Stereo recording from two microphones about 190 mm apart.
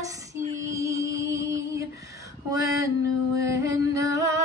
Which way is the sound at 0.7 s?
15° right (ahead or behind).